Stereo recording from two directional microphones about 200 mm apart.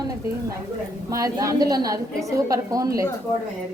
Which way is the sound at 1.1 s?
15° right (ahead or behind).